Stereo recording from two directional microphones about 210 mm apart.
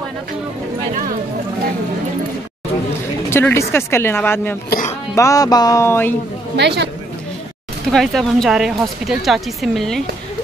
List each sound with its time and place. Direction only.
3.3 s speech: 10° left (ahead or behind)
6.5 s a woman's voice: 55° right (ahead or behind)
7.9 s speech: centre (ahead or behind)